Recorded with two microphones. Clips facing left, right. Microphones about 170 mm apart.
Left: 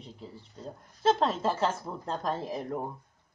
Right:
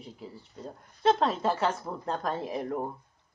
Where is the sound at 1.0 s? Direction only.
Centre (ahead or behind).